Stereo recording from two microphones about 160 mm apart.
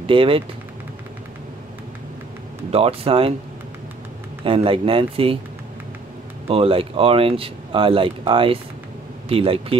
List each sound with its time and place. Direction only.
0.0 s speech: 35° right (ahead or behind)
2.7 s speech: 40° right (ahead or behind)
4.5 s speech: 35° right (ahead or behind)
6.4 s speech: 35° right (ahead or behind)